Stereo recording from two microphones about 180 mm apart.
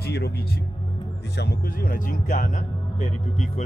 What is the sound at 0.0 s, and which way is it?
Music, 65° left (ahead or behind).